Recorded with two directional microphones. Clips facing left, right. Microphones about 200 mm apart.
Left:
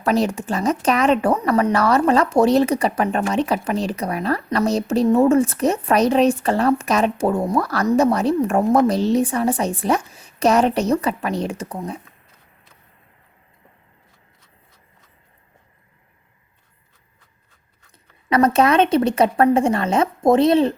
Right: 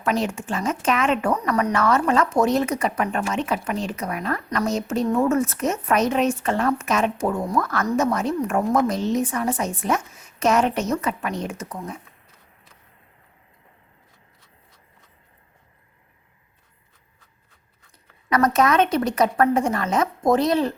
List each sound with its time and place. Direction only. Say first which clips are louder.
0.0 s speech: left 4 dB; 35° left (ahead or behind)
18.3 s speech: left 3 dB; 30° left (ahead or behind)